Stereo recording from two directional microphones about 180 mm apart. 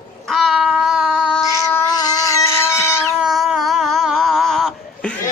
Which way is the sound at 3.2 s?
Centre (ahead or behind).